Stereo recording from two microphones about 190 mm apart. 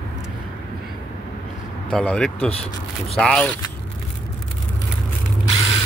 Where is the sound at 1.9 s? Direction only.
5° left (ahead or behind).